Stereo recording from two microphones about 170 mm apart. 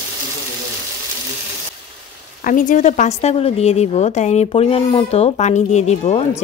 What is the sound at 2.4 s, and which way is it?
Speech, 50° left (ahead or behind).